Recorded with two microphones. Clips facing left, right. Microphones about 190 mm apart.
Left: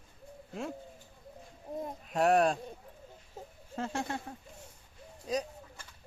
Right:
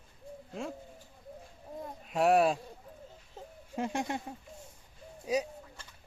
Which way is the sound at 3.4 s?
10° left (ahead or behind).